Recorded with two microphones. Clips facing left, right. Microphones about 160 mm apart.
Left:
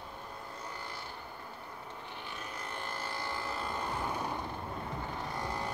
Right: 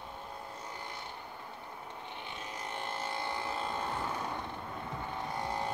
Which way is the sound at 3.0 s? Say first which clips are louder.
Right 2 dB; 25° right (ahead or behind).